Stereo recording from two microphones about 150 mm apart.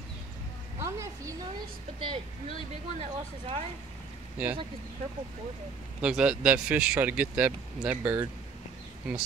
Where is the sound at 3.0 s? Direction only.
45° right (ahead or behind).